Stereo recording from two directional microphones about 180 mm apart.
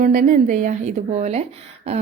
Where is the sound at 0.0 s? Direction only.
45° right (ahead or behind).